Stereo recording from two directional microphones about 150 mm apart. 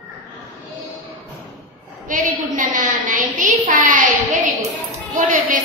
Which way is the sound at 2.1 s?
60° right (ahead or behind).